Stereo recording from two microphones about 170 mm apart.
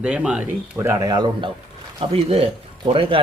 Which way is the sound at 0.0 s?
5° right (ahead or behind).